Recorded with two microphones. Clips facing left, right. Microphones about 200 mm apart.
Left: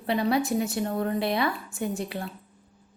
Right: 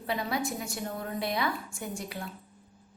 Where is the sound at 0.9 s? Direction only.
60° left (ahead or behind).